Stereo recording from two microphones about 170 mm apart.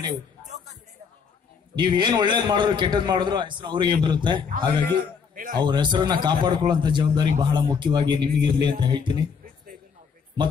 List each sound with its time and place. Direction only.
1.8 s a man's voice: 25° right (ahead or behind)
5.3 s a man's voice: 55° right (ahead or behind)
5.7 s a man's voice: 25° right (ahead or behind)